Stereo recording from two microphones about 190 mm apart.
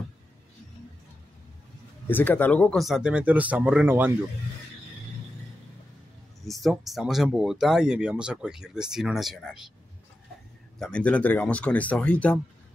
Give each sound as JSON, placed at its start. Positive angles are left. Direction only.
{"t": 2.0, "sound": "speech", "side_deg": 10}
{"t": 6.4, "sound": "speech", "side_deg": 0}
{"t": 10.8, "sound": "speech", "side_deg": 5}